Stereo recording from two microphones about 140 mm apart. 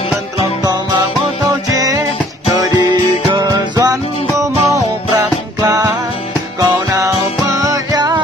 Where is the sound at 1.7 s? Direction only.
25° right (ahead or behind).